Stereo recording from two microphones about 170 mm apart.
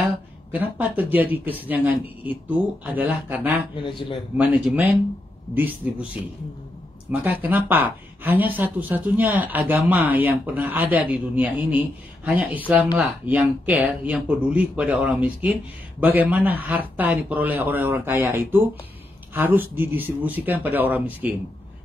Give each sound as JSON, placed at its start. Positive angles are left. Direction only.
{"t": 0.5, "sound": "speech", "side_deg": -10}
{"t": 3.7, "sound": "a man's voice", "side_deg": 30}
{"t": 4.4, "sound": "speech", "side_deg": -10}
{"t": 7.1, "sound": "speech", "side_deg": -10}